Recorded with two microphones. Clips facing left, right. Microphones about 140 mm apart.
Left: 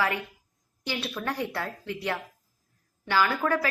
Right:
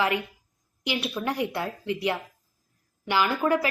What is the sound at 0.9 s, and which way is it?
A woman's voice, 15° right (ahead or behind).